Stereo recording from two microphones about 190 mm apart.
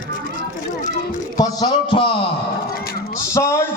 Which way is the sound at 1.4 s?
20° left (ahead or behind).